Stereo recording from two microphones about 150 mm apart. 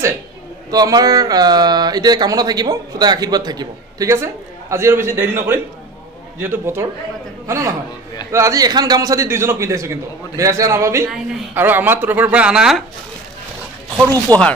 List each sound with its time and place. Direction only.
0.7 s speech: 25° right (ahead or behind); by 12.8 s 5° right (ahead or behind)
13.9 s speech: 25° right (ahead or behind)